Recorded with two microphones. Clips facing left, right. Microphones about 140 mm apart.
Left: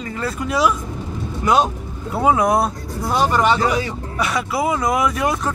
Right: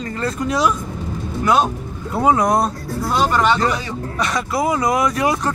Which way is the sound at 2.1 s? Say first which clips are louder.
Even; 5° left (ahead or behind).